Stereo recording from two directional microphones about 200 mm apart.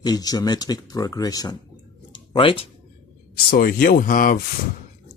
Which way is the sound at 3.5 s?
45° left (ahead or behind).